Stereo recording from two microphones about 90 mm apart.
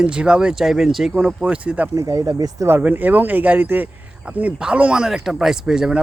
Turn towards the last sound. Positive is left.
turn(degrees=-5)  # may be behind; listen again after turning